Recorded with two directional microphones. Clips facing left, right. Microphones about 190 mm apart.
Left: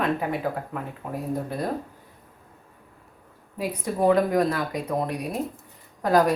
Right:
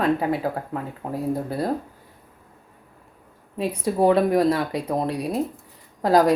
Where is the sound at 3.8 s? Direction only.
30° right (ahead or behind).